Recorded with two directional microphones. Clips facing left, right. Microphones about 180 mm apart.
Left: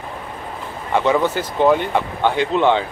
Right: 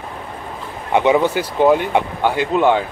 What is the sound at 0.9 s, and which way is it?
Speech, 15° right (ahead or behind).